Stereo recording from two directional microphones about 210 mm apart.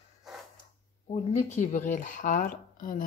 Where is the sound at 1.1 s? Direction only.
30° left (ahead or behind).